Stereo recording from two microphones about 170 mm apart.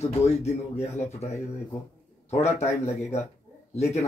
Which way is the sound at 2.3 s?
40° left (ahead or behind).